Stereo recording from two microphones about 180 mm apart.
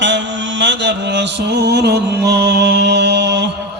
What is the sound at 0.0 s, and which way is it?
Mantra, 85° right.